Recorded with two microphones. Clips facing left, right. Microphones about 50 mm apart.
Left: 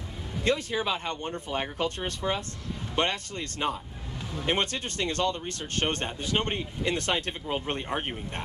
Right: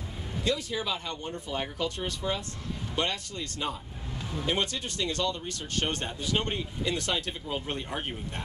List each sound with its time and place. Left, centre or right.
0.4 s speech: left